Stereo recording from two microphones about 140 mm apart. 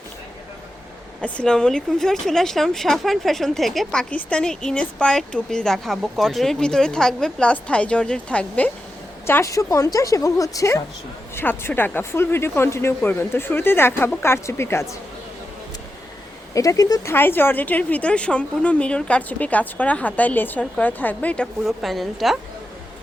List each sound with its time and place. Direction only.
1.2 s speech: 5° left (ahead or behind)
16.6 s speech: 25° left (ahead or behind); by 22.4 s centre (ahead or behind)